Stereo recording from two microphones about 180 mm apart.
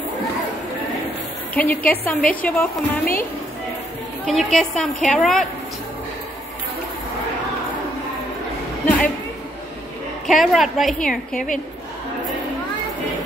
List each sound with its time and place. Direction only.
1.5 s a woman's voice: 10° left (ahead or behind)
4.3 s a woman's voice: centre (ahead or behind)
8.8 s speech: 10° left (ahead or behind)
10.2 s a woman's voice: centre (ahead or behind)
11.3 s a woman's voice: 45° left (ahead or behind)